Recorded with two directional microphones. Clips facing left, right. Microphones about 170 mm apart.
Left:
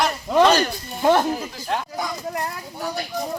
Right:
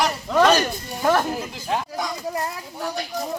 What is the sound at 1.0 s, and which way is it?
Speech, 20° left (ahead or behind).